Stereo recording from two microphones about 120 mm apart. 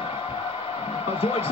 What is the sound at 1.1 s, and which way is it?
Speech, 55° left (ahead or behind).